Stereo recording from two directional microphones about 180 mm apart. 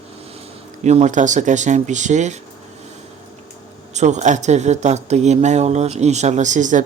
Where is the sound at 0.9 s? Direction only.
40° right (ahead or behind).